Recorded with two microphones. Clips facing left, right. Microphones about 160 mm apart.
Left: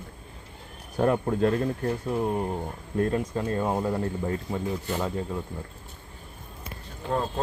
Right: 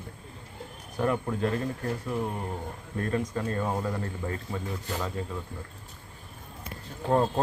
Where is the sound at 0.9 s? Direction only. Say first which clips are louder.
Left 4 dB; 40° left (ahead or behind).